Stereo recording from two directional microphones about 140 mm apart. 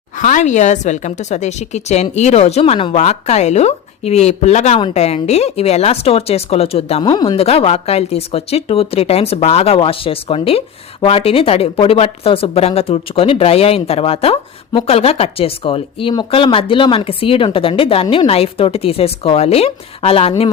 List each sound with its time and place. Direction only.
0.2 s speech: 65° left (ahead or behind); by 7.0 s 45° left (ahead or behind)
7.0 s speech: 35° left (ahead or behind)